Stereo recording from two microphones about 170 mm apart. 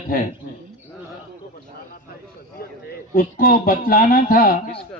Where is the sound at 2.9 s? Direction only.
55° left (ahead or behind).